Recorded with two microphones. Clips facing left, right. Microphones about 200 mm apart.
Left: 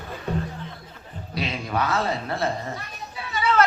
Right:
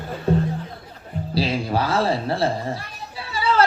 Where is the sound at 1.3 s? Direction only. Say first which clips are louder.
Right 5 dB; 30° right (ahead or behind).